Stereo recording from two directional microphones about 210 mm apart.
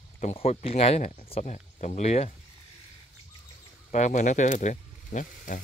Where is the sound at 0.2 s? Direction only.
30° left (ahead or behind).